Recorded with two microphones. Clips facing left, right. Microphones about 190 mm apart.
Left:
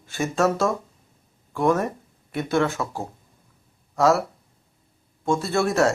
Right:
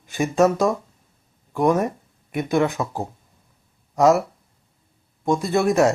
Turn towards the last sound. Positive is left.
turn(degrees=-15)  # may be behind; listen again after turning